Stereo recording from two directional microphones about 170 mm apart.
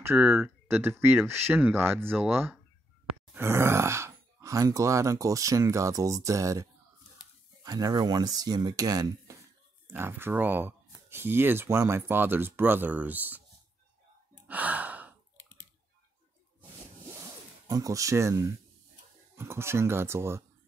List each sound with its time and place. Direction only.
0.0 s speech: 15° right (ahead or behind)
14.5 s gasp: 10° right (ahead or behind)
17.1 s zipper: 20° right (ahead or behind)
19.3 s speech: 15° right (ahead or behind)